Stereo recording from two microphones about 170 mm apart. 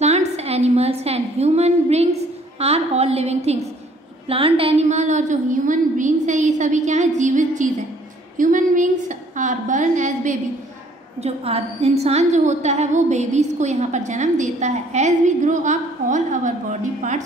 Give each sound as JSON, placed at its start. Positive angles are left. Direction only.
{"t": 0.0, "sound": "a sound", "side_deg": -40}
{"t": 2.6, "sound": "a woman's voice", "side_deg": -35}
{"t": 11.1, "sound": "a woman's voice", "side_deg": -35}